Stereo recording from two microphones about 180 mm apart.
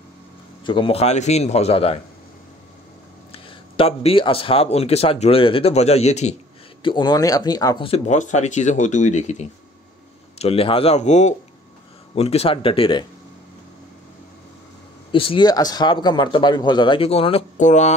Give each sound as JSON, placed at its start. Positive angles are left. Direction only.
{"t": 0.7, "sound": "speech", "side_deg": 30}
{"t": 3.3, "sound": "speech", "side_deg": 30}
{"t": 6.8, "sound": "a man's voice", "side_deg": 25}
{"t": 8.1, "sound": "speech", "side_deg": 40}
{"t": 15.1, "sound": "a man's voice", "side_deg": 30}